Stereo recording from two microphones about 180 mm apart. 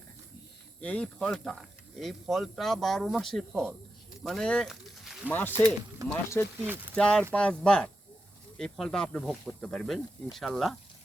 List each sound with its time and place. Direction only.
0.8 s speech: 5° left (ahead or behind)
5.3 s speech: 10° left (ahead or behind)
5.5 s speech: 20° right (ahead or behind)
6.1 s speech: 15° left (ahead or behind)